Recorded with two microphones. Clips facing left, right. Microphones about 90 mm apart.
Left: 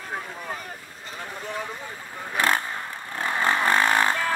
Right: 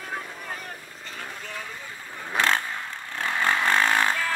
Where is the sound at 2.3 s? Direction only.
15° left (ahead or behind).